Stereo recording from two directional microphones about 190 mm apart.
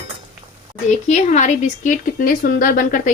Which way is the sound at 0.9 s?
40° left (ahead or behind).